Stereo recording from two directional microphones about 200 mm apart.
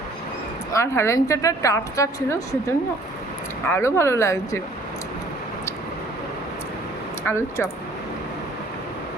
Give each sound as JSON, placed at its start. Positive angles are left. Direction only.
{"t": 0.7, "sound": "a woman's voice", "side_deg": 15}
{"t": 3.7, "sound": "a woman's voice", "side_deg": 15}
{"t": 7.3, "sound": "a woman's voice", "side_deg": 15}